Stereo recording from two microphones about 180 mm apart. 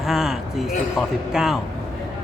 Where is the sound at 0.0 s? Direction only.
Centre (ahead or behind).